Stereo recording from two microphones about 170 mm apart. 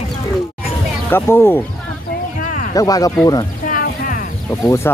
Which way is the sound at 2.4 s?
50° left (ahead or behind).